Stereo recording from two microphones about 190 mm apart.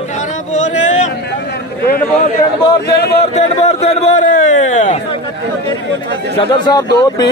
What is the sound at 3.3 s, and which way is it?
Speech, 35° left (ahead or behind).